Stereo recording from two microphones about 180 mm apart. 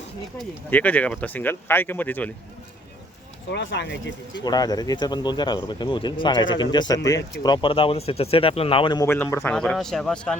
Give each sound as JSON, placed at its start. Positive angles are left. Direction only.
{"t": 0.3, "sound": "speech", "side_deg": 10}
{"t": 3.5, "sound": "speech", "side_deg": 85}
{"t": 4.4, "sound": "speech", "side_deg": 20}
{"t": 9.0, "sound": "a man's voice", "side_deg": 10}